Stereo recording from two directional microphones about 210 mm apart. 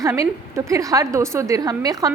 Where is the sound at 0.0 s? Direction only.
15° right (ahead or behind).